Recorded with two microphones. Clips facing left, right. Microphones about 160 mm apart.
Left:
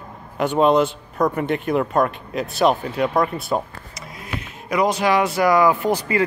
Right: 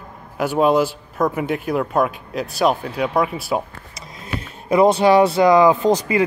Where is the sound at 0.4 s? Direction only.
5° right (ahead or behind).